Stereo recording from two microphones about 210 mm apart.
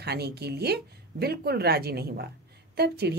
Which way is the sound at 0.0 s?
50° right (ahead or behind).